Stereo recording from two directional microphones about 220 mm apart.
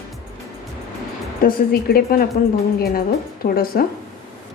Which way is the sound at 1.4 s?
40° left (ahead or behind).